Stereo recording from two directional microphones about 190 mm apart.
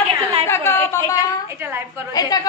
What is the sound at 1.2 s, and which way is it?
Speech, 10° right (ahead or behind).